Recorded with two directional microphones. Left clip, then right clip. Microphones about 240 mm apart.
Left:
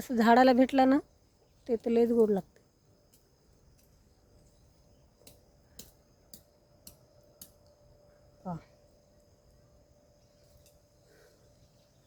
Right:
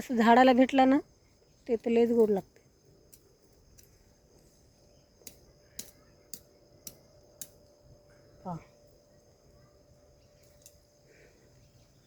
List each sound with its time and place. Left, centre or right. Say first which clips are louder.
0.0 s speech: right 1 dB; centre
5.3 s a sound: right 6 dB; right
6.3 s tick-tock: right 6 dB; right